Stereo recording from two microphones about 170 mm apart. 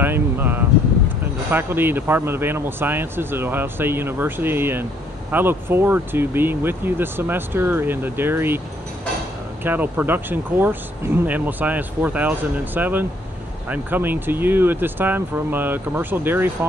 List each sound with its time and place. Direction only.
0.0 s speech: 10° right (ahead or behind)
9.6 s speech: 10° right (ahead or behind)